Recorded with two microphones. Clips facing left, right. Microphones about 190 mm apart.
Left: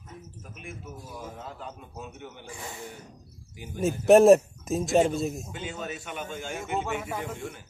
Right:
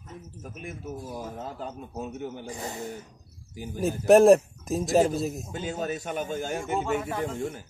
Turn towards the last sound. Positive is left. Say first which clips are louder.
# right 3 dB
turn(degrees=5)  # may be behind; listen again after turning